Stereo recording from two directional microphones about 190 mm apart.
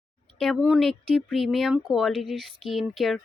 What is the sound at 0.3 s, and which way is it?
Speech, centre (ahead or behind).